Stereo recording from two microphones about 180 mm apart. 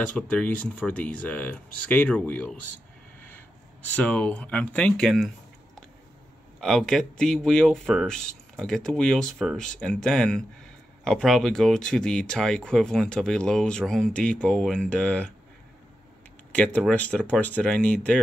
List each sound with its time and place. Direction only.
0.0 s speech: 5° left (ahead or behind)
3.8 s speech: 10° left (ahead or behind)
6.6 s speech: centre (ahead or behind)
16.5 s speech: 5° left (ahead or behind)